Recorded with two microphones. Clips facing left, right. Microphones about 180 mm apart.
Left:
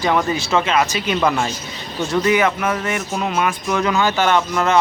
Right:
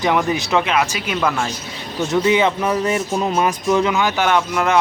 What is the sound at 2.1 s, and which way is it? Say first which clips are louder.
Speech: right 1 dB; 20° right (ahead or behind).